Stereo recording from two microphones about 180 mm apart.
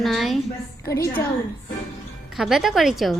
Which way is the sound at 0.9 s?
15° left (ahead or behind).